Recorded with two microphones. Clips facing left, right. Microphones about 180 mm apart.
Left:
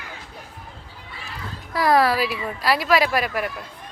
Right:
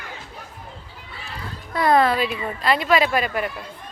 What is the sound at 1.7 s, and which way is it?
Speech, 5° left (ahead or behind).